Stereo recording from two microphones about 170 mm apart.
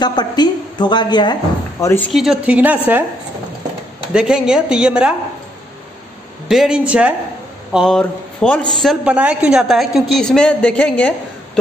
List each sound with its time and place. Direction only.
0.0 s a woman's voice: 25° left (ahead or behind)
2.1 s a woman's voice: 5° right (ahead or behind)
4.1 s speech: 5° right (ahead or behind)
6.5 s a woman's voice: 5° right (ahead or behind)